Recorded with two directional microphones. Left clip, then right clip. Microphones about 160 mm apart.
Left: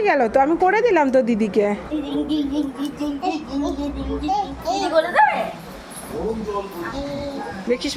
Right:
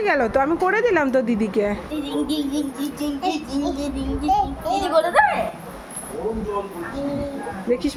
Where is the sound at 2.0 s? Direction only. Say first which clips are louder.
Right 1 dB; 65° right (ahead or behind).